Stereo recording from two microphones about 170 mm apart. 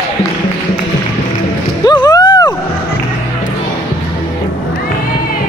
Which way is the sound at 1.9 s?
25° left (ahead or behind).